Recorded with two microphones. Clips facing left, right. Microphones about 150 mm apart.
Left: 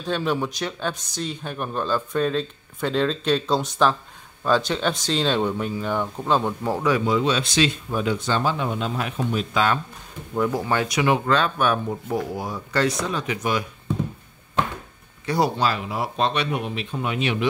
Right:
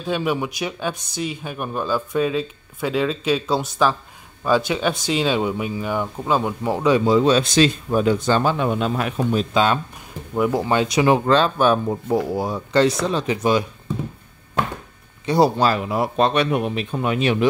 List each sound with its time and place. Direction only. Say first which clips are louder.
0.0 s speech: right 2 dB; 10° right (ahead or behind)
7.1 s speech: right 6 dB; 40° right (ahead or behind)
8.5 s speech: right 5 dB; 60° right (ahead or behind)
9.3 s speech: right 3 dB; 30° right (ahead or behind)
15.2 s speech: right 5 dB; 30° right (ahead or behind)
15.6 s speech: right 5 dB; 50° right (ahead or behind)